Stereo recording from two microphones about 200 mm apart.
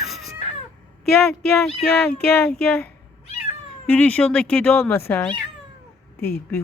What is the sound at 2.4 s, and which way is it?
Speech, 5° left (ahead or behind).